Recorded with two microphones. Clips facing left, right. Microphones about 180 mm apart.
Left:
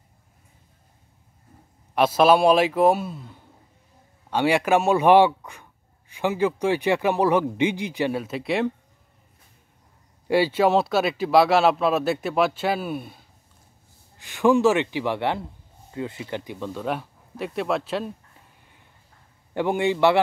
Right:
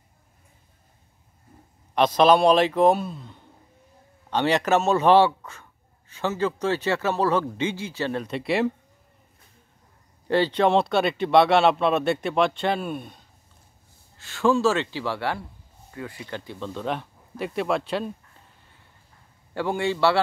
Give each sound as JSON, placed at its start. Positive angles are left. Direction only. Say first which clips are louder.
{"t": 2.0, "sound": "a man's voice", "louder": "even", "side_deg": 5}
{"t": 10.2, "sound": "speech", "louder": "left 1 dB", "side_deg": 10}
{"t": 14.1, "sound": "a man's voice", "louder": "left 3 dB", "side_deg": 15}
{"t": 19.5, "sound": "a man's voice", "louder": "left 3 dB", "side_deg": 20}